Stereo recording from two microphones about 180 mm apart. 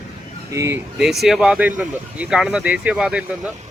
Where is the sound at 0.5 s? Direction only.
15° right (ahead or behind).